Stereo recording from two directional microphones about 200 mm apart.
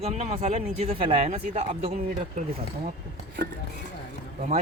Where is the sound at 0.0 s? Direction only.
30° right (ahead or behind).